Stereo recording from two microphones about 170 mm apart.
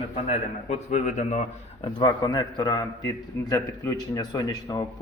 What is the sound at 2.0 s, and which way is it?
A man's voice, 25° left (ahead or behind).